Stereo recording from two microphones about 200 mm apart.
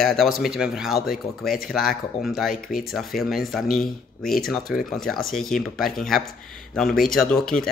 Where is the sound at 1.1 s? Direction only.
50° left (ahead or behind).